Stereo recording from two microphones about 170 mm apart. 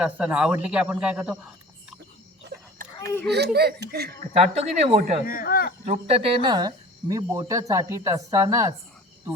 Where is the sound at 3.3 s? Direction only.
70° right (ahead or behind).